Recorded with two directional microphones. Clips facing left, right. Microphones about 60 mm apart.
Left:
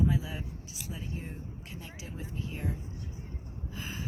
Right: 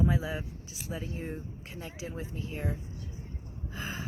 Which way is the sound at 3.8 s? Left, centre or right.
Right.